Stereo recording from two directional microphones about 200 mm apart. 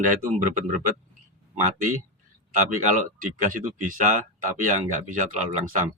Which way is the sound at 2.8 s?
40° right (ahead or behind).